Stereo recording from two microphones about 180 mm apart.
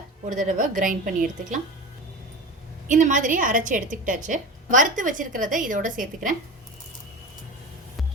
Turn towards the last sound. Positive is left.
turn(degrees=-50)  # may be behind; listen again after turning